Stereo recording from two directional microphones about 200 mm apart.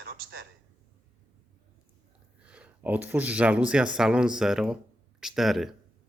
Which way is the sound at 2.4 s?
5° right (ahead or behind).